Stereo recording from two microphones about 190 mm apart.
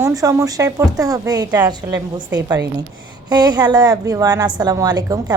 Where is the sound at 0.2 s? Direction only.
20° right (ahead or behind).